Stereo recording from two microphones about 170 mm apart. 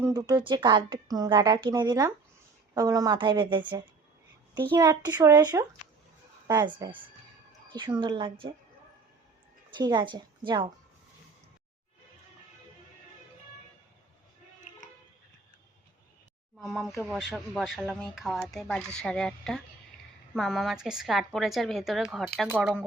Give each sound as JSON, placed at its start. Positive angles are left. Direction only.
{"t": 0.0, "sound": "a woman's voice", "side_deg": -20}
{"t": 9.7, "sound": "a woman's voice", "side_deg": -25}
{"t": 16.6, "sound": "speech", "side_deg": 0}